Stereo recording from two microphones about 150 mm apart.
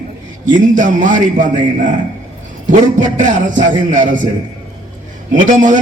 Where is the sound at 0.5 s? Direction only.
60° right (ahead or behind).